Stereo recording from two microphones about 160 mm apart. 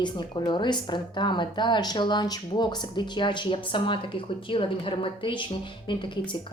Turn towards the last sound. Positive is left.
turn(degrees=30)  # may be behind; listen again after turning